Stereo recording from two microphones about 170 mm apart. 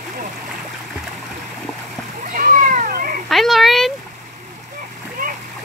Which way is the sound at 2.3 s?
55° right (ahead or behind).